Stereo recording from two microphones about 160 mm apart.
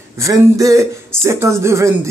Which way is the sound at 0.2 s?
20° right (ahead or behind).